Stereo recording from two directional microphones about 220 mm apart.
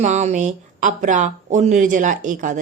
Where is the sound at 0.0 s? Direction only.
30° right (ahead or behind).